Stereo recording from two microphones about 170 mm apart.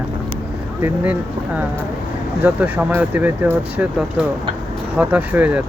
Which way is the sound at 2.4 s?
10° right (ahead or behind).